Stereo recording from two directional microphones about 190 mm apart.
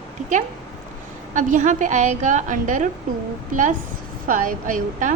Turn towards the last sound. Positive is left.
turn(degrees=-45)  # may be behind; listen again after turning